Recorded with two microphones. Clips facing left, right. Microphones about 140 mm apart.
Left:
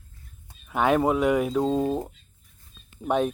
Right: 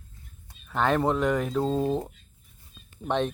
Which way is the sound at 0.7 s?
10° left (ahead or behind).